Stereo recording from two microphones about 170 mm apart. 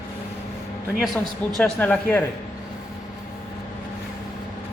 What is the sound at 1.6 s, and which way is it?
Speech, 10° left (ahead or behind).